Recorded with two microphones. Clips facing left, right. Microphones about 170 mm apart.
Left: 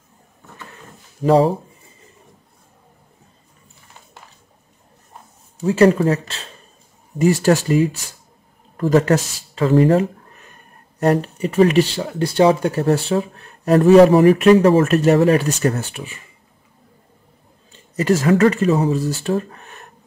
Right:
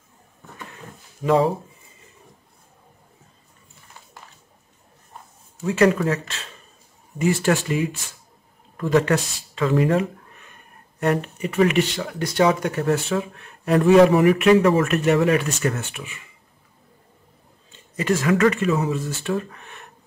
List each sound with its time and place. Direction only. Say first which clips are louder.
1.2 s speech: left 4 dB; 35° left (ahead or behind)
5.6 s speech: left 5 dB; 35° left (ahead or behind)
17.7 s speech: left 5 dB; 35° left (ahead or behind)